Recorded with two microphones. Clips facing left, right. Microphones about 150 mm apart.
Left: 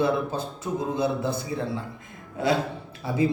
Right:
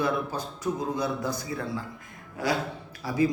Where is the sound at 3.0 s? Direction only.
25° left (ahead or behind).